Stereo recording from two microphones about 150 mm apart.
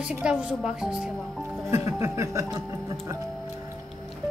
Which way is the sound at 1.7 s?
20° right (ahead or behind).